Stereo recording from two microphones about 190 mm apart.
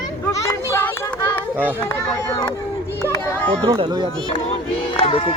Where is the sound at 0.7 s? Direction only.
15° left (ahead or behind).